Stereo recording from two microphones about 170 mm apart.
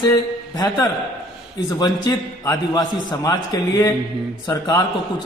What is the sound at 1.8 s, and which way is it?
A man's voice, 25° left (ahead or behind).